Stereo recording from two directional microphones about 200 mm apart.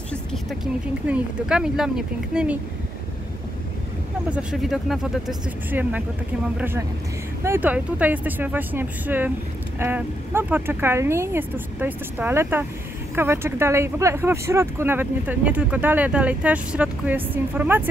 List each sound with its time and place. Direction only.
0.1 s vehicle: centre (ahead or behind)
1.0 s speech: 5° right (ahead or behind)
4.3 s speech: 5° right (ahead or behind)